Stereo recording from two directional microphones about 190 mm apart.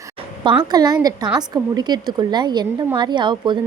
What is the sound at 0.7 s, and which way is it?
Speech, 20° right (ahead or behind).